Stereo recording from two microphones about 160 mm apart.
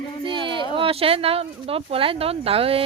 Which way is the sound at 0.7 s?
35° right (ahead or behind).